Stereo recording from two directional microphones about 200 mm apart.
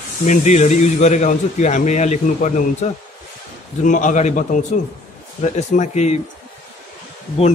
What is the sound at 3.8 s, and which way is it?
Speech, 40° left (ahead or behind).